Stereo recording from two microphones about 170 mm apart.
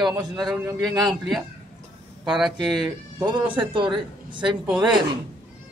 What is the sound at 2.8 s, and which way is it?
A man's voice, 25° right (ahead or behind).